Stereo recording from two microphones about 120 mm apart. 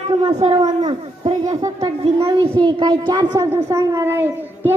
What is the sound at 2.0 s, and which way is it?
A woman's voice, 55° right (ahead or behind).